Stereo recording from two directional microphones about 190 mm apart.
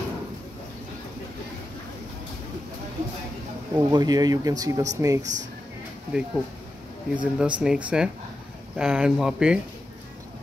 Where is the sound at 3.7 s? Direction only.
20° right (ahead or behind).